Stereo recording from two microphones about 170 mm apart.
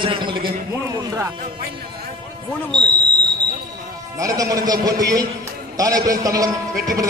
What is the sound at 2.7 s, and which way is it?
Whistle, 25° right (ahead or behind).